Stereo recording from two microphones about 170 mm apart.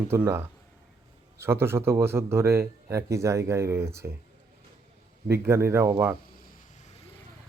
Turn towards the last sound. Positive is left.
turn(degrees=-15)  # may be behind; listen again after turning